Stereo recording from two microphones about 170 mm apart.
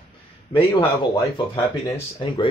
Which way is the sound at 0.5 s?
30° left (ahead or behind).